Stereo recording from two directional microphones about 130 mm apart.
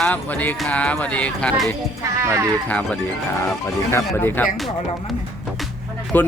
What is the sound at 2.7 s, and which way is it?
Speech, 10° left (ahead or behind).